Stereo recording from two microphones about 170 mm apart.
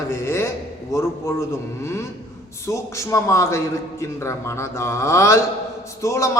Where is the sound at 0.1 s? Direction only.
15° left (ahead or behind).